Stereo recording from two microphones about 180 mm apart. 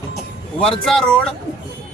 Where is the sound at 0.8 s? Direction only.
5° left (ahead or behind).